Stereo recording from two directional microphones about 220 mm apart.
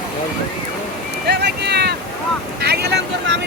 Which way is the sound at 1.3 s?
50° right (ahead or behind).